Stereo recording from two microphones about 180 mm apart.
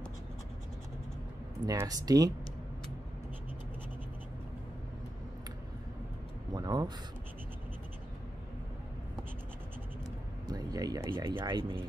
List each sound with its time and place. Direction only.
1.7 s speech: 20° right (ahead or behind)
6.5 s a sound: 20° right (ahead or behind)
10.5 s speech: 20° right (ahead or behind)